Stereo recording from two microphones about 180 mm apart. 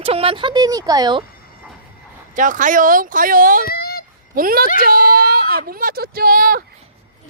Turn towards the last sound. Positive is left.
turn(degrees=-50)  # may be behind; listen again after turning